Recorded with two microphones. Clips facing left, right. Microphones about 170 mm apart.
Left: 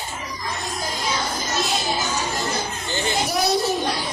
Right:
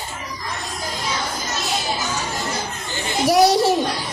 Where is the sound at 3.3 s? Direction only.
85° right.